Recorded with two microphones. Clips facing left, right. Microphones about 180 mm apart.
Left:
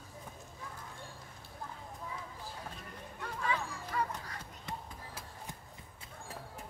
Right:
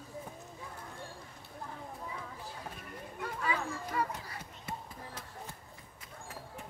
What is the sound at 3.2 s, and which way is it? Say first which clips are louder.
Dog: right 1 dB; 10° right (ahead or behind).